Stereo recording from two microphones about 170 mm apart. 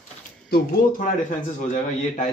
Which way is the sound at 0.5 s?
55° left (ahead or behind).